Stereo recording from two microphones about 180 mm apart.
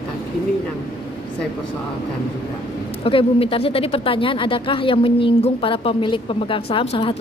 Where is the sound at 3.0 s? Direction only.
30° left (ahead or behind).